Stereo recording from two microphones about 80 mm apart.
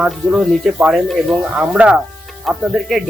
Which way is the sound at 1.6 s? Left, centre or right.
Centre.